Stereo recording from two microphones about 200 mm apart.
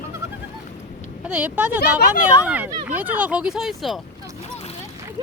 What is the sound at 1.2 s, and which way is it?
Speech, 5° right (ahead or behind).